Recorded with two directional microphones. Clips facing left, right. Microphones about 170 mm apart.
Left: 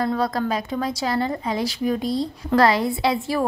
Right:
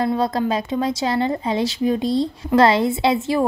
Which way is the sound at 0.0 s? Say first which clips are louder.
Right 3 dB; 20° right (ahead or behind).